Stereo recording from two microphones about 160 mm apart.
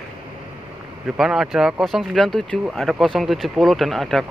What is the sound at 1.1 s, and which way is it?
Speech, 5° right (ahead or behind).